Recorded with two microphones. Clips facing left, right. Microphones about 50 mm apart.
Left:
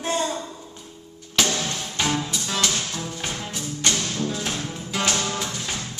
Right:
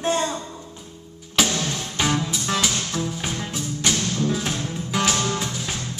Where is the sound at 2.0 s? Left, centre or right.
Centre.